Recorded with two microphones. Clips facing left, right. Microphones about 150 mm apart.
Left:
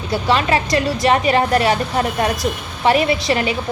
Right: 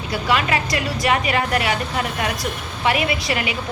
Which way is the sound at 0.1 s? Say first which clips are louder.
Left 4 dB; 30° left (ahead or behind).